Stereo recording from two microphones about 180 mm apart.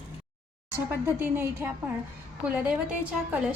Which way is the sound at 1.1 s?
10° right (ahead or behind).